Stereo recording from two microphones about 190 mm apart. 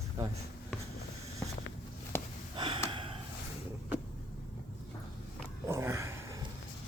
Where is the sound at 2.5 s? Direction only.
25° right (ahead or behind).